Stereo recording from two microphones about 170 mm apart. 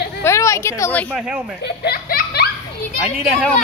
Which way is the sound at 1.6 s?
65° left (ahead or behind).